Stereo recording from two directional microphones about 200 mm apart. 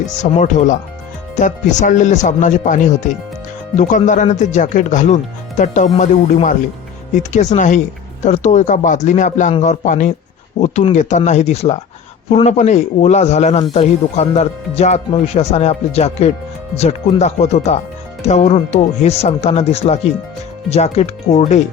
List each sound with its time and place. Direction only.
0.0 s a man's voice: 35° left (ahead or behind)